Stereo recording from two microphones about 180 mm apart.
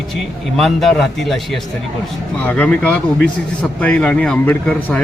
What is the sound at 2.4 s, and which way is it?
A man's voice, 5° left (ahead or behind).